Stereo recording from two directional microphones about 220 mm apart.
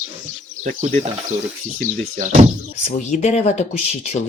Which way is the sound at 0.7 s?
30° right (ahead or behind).